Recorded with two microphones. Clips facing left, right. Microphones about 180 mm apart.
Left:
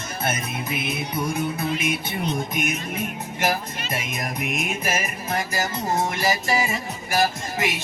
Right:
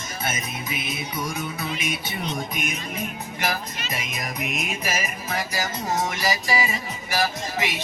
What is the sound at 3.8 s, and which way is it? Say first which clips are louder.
Music: left 3 dB; 55° left (ahead or behind).